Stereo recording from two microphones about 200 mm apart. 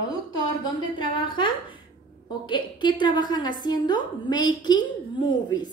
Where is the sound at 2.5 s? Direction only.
20° left (ahead or behind).